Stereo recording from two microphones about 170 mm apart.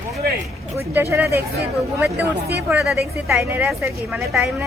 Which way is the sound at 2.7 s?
10° right (ahead or behind).